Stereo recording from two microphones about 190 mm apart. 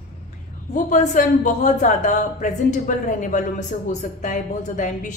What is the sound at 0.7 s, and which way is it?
A woman's voice, 40° left (ahead or behind).